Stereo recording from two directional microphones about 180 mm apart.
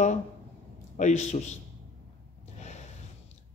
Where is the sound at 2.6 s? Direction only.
40° left (ahead or behind).